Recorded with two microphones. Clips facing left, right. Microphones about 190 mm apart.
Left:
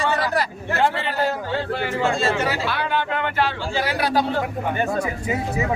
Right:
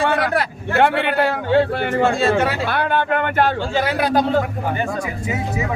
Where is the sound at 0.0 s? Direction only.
60° right (ahead or behind).